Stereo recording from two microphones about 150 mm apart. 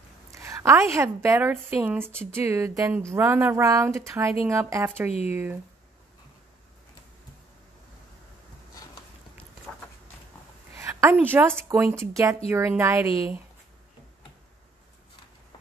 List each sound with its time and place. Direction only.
0.3 s a sound: 20° right (ahead or behind)
0.9 s speech: 20° right (ahead or behind)
10.8 s speech: 20° right (ahead or behind)